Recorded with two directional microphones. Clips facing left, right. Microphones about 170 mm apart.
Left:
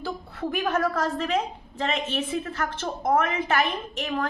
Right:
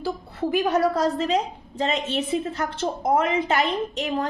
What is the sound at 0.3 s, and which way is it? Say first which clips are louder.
Speech: right 4 dB; 20° right (ahead or behind).